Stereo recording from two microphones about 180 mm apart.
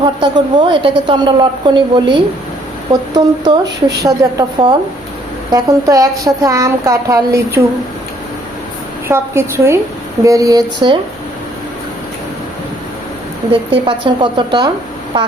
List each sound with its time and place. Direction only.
0.0 s a woman's voice: 25° right (ahead or behind)
9.0 s a woman's voice: 15° right (ahead or behind)
13.5 s a woman's voice: 30° right (ahead or behind)